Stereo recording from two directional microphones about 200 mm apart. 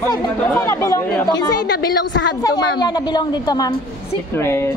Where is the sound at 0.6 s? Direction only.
15° left (ahead or behind).